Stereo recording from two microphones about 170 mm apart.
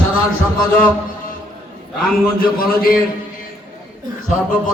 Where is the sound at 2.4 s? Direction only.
60° left (ahead or behind).